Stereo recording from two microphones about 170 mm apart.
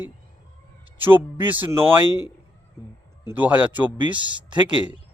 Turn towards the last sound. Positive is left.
turn(degrees=-30)  # may be behind; listen again after turning